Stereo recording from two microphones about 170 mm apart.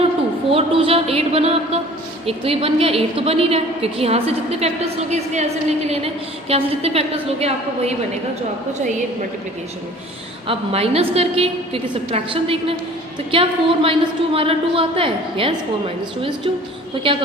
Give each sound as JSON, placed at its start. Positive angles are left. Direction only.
{"t": 0.5, "sound": "a sound", "side_deg": -35}
{"t": 2.2, "sound": "a woman's voice", "side_deg": -35}
{"t": 10.4, "sound": "a woman's voice", "side_deg": -35}